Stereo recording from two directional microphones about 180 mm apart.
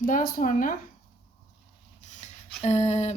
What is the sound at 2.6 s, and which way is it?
Speech, 40° left (ahead or behind).